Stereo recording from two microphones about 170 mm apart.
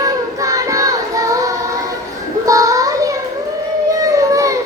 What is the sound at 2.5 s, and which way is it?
Child singing, 20° right (ahead or behind).